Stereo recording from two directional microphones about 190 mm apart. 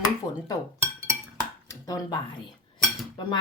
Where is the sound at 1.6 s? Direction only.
20° left (ahead or behind).